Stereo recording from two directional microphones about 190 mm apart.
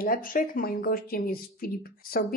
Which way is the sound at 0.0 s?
50° left (ahead or behind).